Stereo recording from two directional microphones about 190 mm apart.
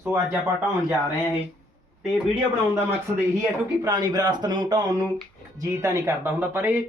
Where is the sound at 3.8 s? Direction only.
20° right (ahead or behind).